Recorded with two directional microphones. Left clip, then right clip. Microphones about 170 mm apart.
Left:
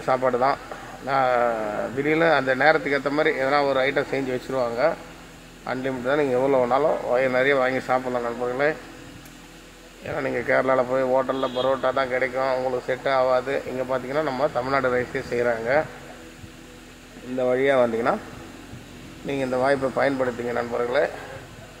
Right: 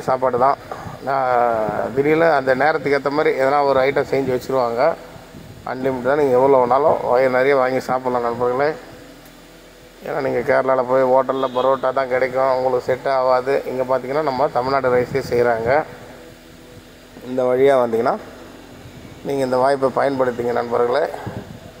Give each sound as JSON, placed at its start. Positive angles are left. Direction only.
{"t": 0.0, "sound": "speech", "side_deg": -10}
{"t": 10.0, "sound": "speech", "side_deg": -5}
{"t": 17.4, "sound": "speech", "side_deg": -15}
{"t": 19.2, "sound": "speech", "side_deg": -15}